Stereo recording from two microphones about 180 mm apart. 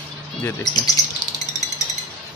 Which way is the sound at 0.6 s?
25° left (ahead or behind).